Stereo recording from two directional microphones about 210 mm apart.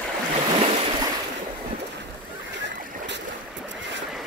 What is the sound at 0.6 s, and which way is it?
Waves, 25° right (ahead or behind).